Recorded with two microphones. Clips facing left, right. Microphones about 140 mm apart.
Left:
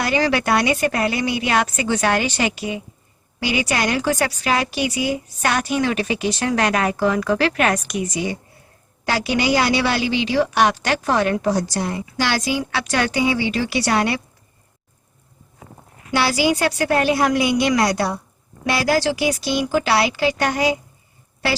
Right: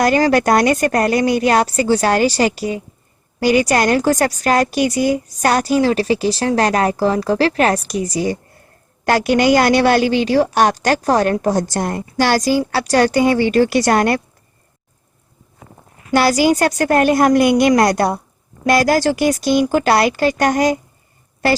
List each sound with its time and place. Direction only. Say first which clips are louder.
0.0 s a woman's voice: right 6 dB; 45° right (ahead or behind)
9.0 s a woman's voice: right 6 dB; 50° right (ahead or behind)
16.1 s a woman's voice: right 5 dB; 45° right (ahead or behind)